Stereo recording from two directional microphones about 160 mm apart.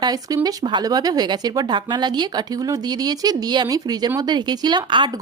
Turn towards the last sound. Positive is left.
turn(degrees=-30)  # may be behind; listen again after turning